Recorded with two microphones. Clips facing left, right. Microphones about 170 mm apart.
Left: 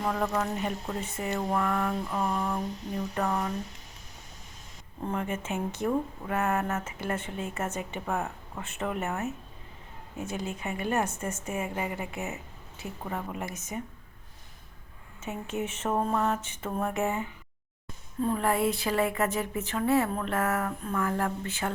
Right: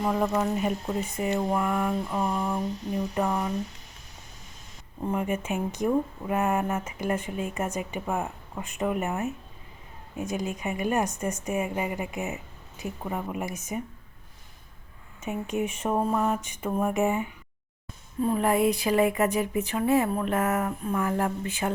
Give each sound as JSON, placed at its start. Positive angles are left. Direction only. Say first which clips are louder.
{"t": 0.0, "sound": "speech", "louder": "right 4 dB", "side_deg": -15}
{"t": 5.0, "sound": "speech", "louder": "right 4 dB", "side_deg": -15}
{"t": 15.2, "sound": "speech", "louder": "right 4 dB", "side_deg": -15}